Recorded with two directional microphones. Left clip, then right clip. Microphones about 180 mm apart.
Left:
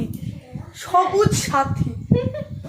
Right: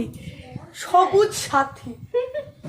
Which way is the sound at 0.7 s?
25° right (ahead or behind).